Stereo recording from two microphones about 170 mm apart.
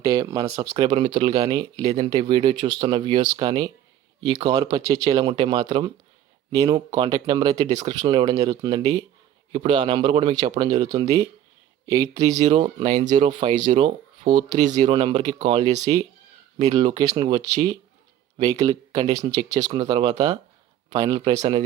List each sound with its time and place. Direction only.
0.0 s speech: 20° right (ahead or behind)
0.4 s speech: 35° right (ahead or behind)
9.5 s speech: 30° right (ahead or behind)
19.2 s speech: 20° right (ahead or behind)